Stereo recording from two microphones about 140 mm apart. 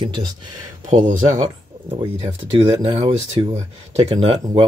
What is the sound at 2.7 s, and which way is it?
Speech, 35° right (ahead or behind).